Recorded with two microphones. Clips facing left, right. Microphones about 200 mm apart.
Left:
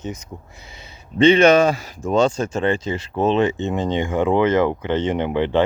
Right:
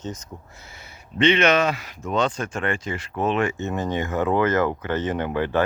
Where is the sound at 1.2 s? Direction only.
30° left (ahead or behind).